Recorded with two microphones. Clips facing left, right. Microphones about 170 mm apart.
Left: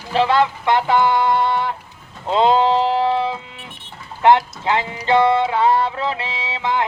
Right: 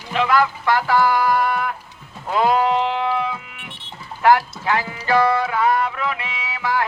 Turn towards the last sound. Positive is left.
turn(degrees=25)  # may be behind; listen again after turning